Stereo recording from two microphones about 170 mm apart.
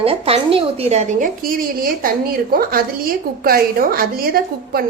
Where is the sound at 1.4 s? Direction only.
55° right (ahead or behind).